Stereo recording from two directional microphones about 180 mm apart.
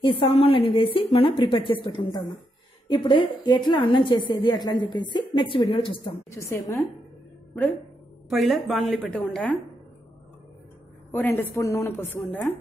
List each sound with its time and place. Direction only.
0.0 s a woman's voice: 30° left (ahead or behind)
6.3 s a woman's voice: 15° left (ahead or behind)
8.3 s a woman's voice: centre (ahead or behind)
11.1 s a woman's voice: 10° left (ahead or behind)